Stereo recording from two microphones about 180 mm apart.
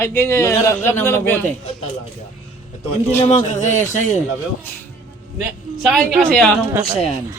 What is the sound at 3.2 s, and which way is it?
Speech, 40° left (ahead or behind).